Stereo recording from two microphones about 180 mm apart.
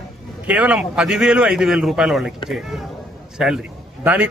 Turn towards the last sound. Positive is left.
turn(degrees=-5)  # may be behind; listen again after turning